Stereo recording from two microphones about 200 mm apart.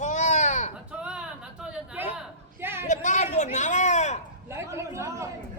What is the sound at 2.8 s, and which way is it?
Speech, 35° left (ahead or behind).